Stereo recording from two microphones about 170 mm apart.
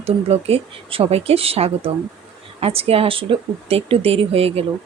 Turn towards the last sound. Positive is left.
turn(degrees=-35)  # may be behind; listen again after turning